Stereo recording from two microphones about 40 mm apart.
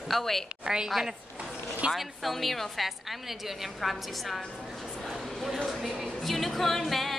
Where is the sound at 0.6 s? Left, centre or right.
Centre.